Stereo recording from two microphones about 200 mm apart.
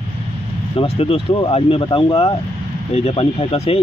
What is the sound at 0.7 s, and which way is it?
Speech, 30° left (ahead or behind).